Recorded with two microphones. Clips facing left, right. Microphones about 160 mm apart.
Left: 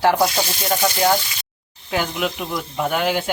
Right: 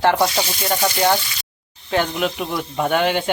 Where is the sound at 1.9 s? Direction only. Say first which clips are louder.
Right 2 dB; 5° left (ahead or behind).